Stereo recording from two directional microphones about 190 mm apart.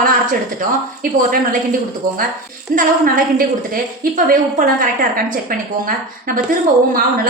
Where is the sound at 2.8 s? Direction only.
45° right (ahead or behind).